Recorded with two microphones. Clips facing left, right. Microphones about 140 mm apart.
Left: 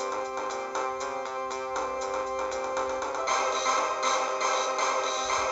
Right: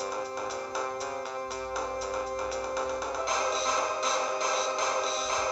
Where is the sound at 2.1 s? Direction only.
40° left (ahead or behind).